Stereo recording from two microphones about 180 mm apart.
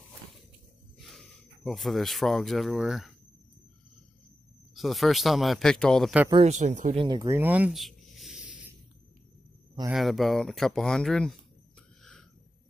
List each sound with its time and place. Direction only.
0.9 s speech: centre (ahead or behind)
4.7 s speech: centre (ahead or behind)
6.3 s speech: 40° right (ahead or behind)
7.0 s speech: 25° right (ahead or behind)
7.2 s a sound: 10° right (ahead or behind)
9.8 s speech: centre (ahead or behind)
12.0 s a sound: 5° left (ahead or behind)